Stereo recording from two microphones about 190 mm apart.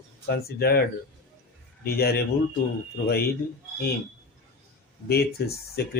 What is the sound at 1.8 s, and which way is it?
Speech, 55° left (ahead or behind).